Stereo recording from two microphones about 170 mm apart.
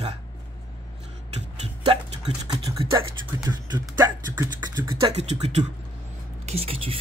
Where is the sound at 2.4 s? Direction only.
25° right (ahead or behind).